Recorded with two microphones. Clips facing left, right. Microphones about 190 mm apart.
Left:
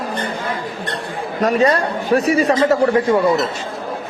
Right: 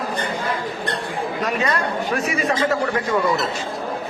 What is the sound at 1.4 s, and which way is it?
Speech, 40° left (ahead or behind).